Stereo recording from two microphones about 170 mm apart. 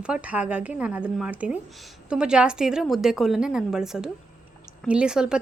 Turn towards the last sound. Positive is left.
turn(degrees=-5)  # may be behind; listen again after turning